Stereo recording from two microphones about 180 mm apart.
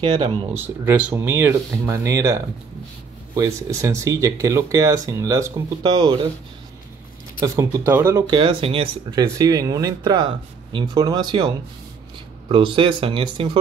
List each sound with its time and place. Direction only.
0.0 s speech: 30° right (ahead or behind)
0.5 s speech: 10° right (ahead or behind)
7.3 s speech: 20° right (ahead or behind)